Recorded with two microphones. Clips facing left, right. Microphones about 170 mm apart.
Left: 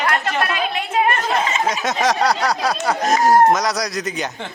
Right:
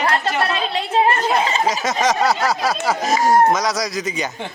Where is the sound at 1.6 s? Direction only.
Centre (ahead or behind).